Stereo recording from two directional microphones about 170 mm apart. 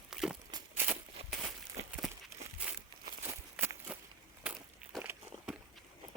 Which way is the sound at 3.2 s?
10° right (ahead or behind).